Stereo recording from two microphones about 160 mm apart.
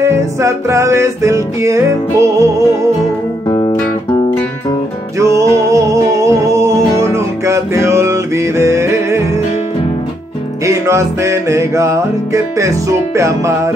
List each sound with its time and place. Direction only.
0.0 s music: 20° right (ahead or behind)
3.4 s music: 20° left (ahead or behind)
5.1 s music: 20° right (ahead or behind)
10.6 s music: 20° right (ahead or behind)